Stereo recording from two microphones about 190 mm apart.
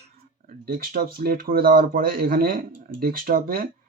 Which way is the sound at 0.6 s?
50° right (ahead or behind).